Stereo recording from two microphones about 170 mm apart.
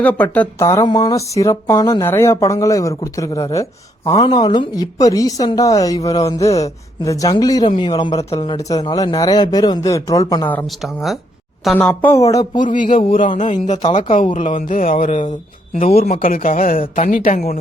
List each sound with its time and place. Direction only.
0.0 s speech: 10° left (ahead or behind)
10.5 s speech: 10° left (ahead or behind)
10.8 s speech: centre (ahead or behind)
12.1 s speech: 20° left (ahead or behind)
13.1 s speech: 45° left (ahead or behind)
16.2 s speech: 55° left (ahead or behind)